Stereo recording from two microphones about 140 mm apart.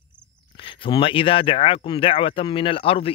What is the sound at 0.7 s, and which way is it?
Speech, 40° left (ahead or behind).